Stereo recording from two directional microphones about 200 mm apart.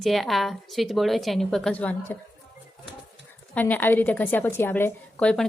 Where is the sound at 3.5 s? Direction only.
10° left (ahead or behind).